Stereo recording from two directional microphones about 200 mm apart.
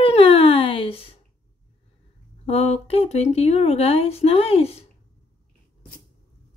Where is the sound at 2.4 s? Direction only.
30° left (ahead or behind).